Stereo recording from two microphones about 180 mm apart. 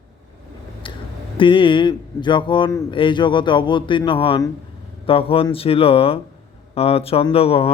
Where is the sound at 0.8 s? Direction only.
30° left (ahead or behind).